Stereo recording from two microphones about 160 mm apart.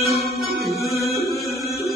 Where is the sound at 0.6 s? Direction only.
20° right (ahead or behind).